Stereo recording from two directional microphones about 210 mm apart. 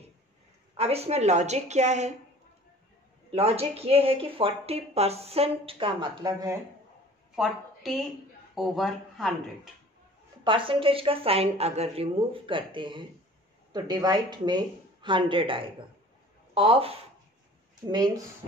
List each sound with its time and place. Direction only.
0.7 s a woman's voice: 30° right (ahead or behind)
3.3 s a woman's voice: 30° right (ahead or behind)
7.3 s a woman's voice: centre (ahead or behind)
10.4 s a woman's voice: 25° right (ahead or behind)